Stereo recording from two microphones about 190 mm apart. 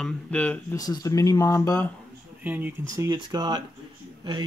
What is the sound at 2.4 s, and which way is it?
Speech, 10° right (ahead or behind).